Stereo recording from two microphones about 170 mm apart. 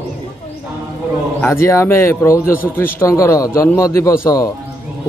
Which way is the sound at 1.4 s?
15° left (ahead or behind).